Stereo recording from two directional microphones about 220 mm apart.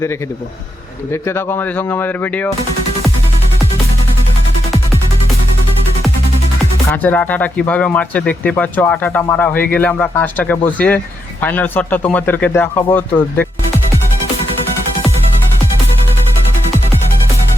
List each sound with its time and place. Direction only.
1.1 s speech: 10° left (ahead or behind)
6.9 s speech: 10° left (ahead or behind)